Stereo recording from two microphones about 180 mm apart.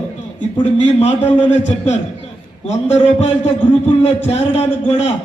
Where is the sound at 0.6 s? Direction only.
40° left (ahead or behind).